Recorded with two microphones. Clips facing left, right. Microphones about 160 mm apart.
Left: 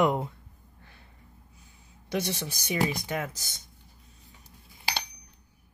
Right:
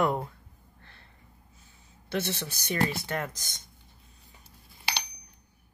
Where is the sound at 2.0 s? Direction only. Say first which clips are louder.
Left 1 dB; 15° left (ahead or behind).